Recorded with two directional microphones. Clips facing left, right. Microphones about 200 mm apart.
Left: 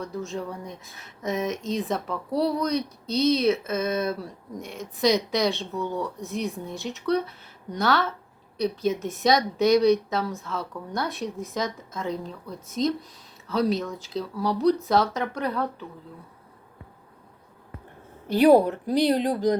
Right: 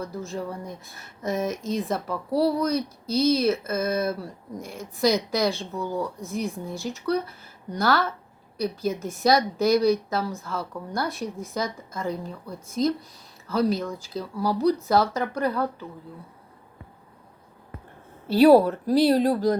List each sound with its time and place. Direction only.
0.0 s speech: centre (ahead or behind)
18.3 s speech: 15° left (ahead or behind)